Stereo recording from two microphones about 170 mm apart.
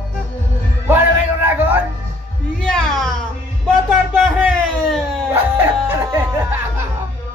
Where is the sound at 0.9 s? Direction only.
10° right (ahead or behind).